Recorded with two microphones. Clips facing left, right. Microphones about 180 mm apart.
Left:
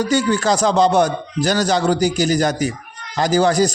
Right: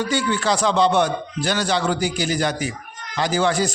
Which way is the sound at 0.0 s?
40° left (ahead or behind).